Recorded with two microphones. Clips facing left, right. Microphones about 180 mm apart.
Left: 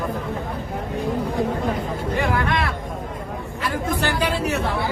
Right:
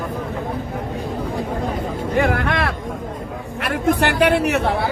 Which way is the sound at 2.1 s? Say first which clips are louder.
Right 4 dB; 60° right (ahead or behind).